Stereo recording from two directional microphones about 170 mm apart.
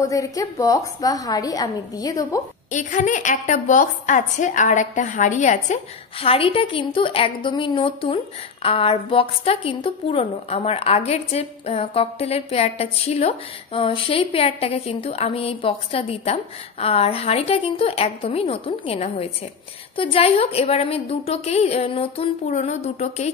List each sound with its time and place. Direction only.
0.0 s a woman's voice: 20° left (ahead or behind)
2.7 s a woman's voice: 45° left (ahead or behind)
6.2 s a woman's voice: 35° left (ahead or behind)